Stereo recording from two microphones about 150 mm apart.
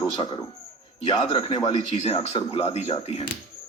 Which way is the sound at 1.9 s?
45° left (ahead or behind).